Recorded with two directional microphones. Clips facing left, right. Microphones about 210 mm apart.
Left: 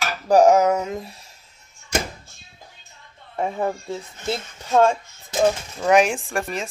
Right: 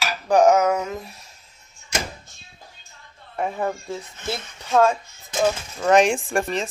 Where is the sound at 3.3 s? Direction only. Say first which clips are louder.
Left 1 dB; 20° left (ahead or behind).